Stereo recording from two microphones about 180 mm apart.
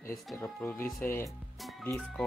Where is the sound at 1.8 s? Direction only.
5° left (ahead or behind).